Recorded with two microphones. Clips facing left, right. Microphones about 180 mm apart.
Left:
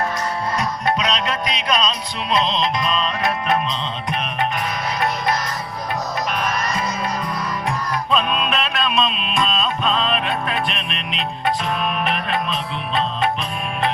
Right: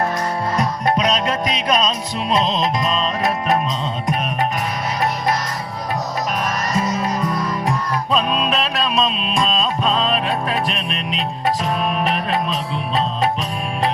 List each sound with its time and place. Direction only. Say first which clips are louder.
0.5 s music: right 3 dB; 45° right (ahead or behind)
8.1 s music: right 2 dB; 35° right (ahead or behind)